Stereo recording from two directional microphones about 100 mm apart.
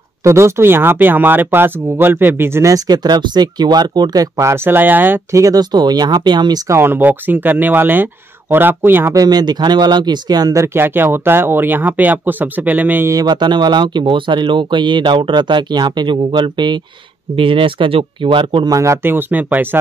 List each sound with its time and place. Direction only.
0.2 s speech: 30° right (ahead or behind)
2.7 s speech: 40° right (ahead or behind); by 5.2 s 20° right (ahead or behind)
5.3 s speech: 35° right (ahead or behind)
6.7 s speech: 20° right (ahead or behind)
9.1 s speech: 40° right (ahead or behind); by 13.1 s 20° right (ahead or behind)
13.1 s speech: 45° right (ahead or behind)
18.7 s speech: 30° right (ahead or behind)